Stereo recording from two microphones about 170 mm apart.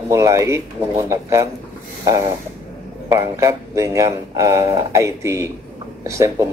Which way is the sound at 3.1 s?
20° right (ahead or behind).